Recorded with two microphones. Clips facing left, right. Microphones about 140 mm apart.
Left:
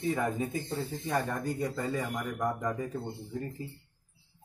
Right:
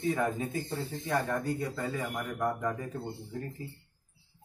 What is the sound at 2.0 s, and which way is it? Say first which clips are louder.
Speech: even; 15° left (ahead or behind).